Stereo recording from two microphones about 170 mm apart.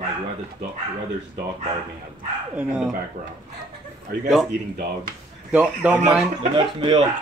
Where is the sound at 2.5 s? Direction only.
5° right (ahead or behind).